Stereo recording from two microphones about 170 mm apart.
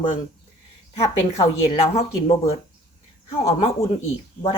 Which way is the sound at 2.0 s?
40° left (ahead or behind).